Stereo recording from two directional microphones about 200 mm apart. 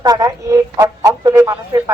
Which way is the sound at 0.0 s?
20° right (ahead or behind).